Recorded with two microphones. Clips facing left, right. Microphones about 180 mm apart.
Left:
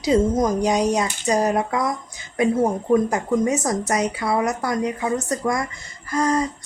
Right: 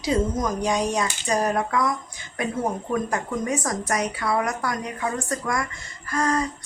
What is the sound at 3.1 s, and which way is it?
Speech, 20° left (ahead or behind).